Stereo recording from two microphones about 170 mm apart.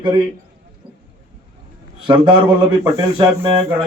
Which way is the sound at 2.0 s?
30° right (ahead or behind).